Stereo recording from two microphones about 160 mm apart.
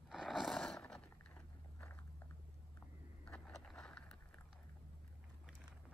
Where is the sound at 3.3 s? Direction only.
5° left (ahead or behind).